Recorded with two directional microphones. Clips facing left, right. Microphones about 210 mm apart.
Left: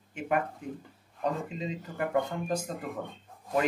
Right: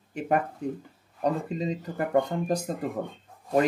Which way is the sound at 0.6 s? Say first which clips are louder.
Right 7 dB; 35° right (ahead or behind).